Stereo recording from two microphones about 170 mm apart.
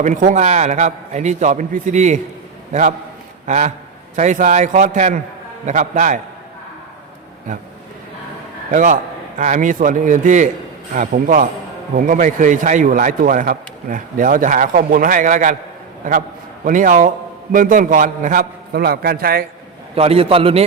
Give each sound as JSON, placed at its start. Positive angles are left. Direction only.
{"t": 0.0, "sound": "a man's voice", "side_deg": -45}
{"t": 3.4, "sound": "a man's voice", "side_deg": -45}
{"t": 8.7, "sound": "a man's voice", "side_deg": -50}
{"t": 16.6, "sound": "a man's voice", "side_deg": -50}
{"t": 20.0, "sound": "a man's voice", "side_deg": -35}